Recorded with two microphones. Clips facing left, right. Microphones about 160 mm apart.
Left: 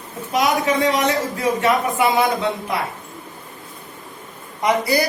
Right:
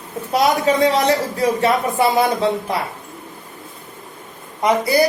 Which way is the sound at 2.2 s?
35° right (ahead or behind).